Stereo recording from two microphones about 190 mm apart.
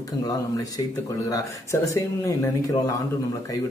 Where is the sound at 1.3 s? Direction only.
15° left (ahead or behind).